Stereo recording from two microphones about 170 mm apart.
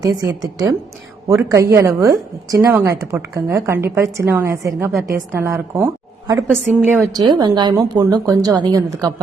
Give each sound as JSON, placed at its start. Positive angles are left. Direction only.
{"t": 0.0, "sound": "a woman's voice", "side_deg": -20}